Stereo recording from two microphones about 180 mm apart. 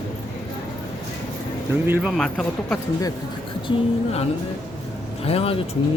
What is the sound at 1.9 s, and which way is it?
Speech, 5° right (ahead or behind).